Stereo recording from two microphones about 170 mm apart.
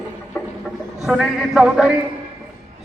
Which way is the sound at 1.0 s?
Centre (ahead or behind).